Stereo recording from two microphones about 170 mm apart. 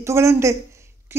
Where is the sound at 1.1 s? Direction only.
15° right (ahead or behind).